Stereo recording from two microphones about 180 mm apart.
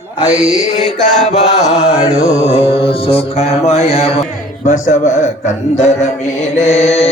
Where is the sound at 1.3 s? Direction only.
40° left (ahead or behind).